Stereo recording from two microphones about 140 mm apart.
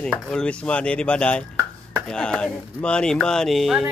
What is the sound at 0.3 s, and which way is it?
Speech, 5° left (ahead or behind).